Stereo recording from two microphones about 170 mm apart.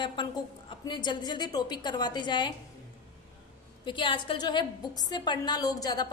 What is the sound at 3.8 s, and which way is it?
A woman's voice, 30° left (ahead or behind).